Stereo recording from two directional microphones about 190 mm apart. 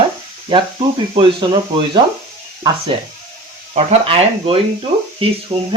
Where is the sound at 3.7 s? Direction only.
30° right (ahead or behind).